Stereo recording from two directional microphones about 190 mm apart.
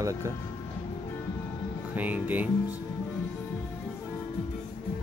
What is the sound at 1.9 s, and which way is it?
Speech, 10° right (ahead or behind).